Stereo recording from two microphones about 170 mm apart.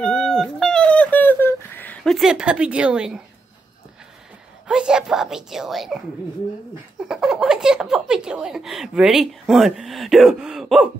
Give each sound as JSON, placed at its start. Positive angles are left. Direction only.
{"t": 0.0, "sound": "a sound", "side_deg": 5}
{"t": 2.1, "sound": "speech", "side_deg": -5}
{"t": 4.6, "sound": "a woman's voice", "side_deg": -5}